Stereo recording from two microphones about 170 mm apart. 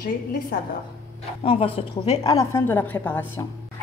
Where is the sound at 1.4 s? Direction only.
35° left (ahead or behind).